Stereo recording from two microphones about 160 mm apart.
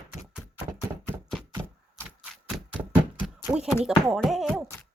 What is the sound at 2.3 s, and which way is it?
Typewriter, centre (ahead or behind).